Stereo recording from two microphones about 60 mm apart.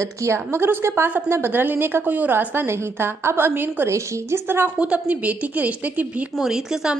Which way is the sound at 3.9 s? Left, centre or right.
Right.